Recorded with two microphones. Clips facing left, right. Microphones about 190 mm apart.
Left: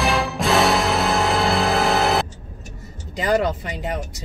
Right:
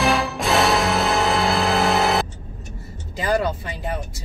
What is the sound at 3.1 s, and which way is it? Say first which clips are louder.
Speech: left 2 dB; 20° left (ahead or behind).